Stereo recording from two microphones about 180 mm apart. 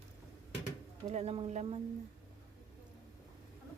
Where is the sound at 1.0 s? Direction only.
35° right (ahead or behind).